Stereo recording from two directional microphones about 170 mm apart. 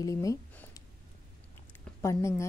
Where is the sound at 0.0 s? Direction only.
20° left (ahead or behind).